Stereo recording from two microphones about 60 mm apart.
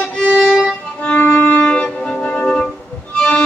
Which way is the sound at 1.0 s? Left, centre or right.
Left.